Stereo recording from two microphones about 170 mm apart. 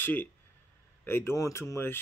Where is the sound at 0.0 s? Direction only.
10° left (ahead or behind).